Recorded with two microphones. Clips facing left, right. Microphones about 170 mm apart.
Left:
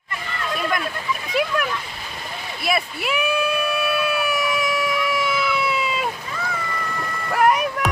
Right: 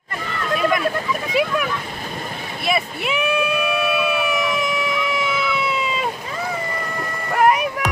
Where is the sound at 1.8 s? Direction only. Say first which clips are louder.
Right 5 dB; 45° right (ahead or behind).